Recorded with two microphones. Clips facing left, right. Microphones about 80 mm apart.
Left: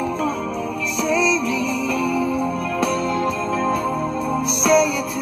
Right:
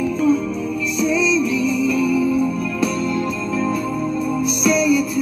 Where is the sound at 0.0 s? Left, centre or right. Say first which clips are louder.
Right 5 dB; left.